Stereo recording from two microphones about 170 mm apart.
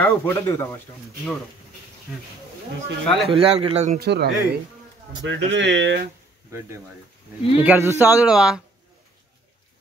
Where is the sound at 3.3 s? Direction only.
35° right (ahead or behind).